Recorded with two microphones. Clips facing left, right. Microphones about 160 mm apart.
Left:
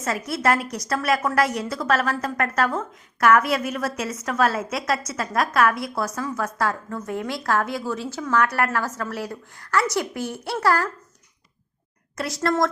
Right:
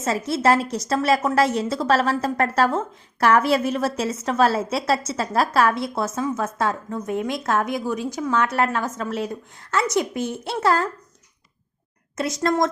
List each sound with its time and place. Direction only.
0.0 s a woman's voice: 25° right (ahead or behind)
12.1 s a woman's voice: 20° right (ahead or behind)